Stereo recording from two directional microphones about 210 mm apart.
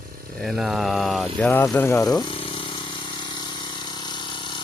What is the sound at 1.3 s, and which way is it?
Electric toothbrush, 10° left (ahead or behind).